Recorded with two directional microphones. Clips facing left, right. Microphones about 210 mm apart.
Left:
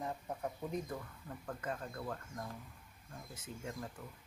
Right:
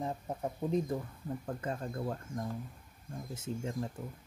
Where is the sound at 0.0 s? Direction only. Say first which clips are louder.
Right 4 dB; 25° right (ahead or behind).